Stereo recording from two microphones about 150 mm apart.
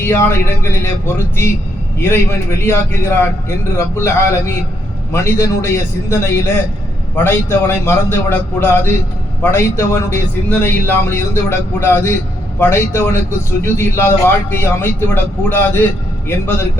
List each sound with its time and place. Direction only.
0.0 s a man's voice: 15° left (ahead or behind)